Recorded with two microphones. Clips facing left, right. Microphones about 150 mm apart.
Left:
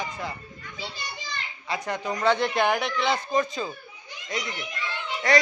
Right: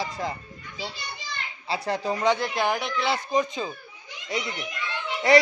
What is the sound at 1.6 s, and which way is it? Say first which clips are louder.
Speech: right 3 dB; 30° right (ahead or behind).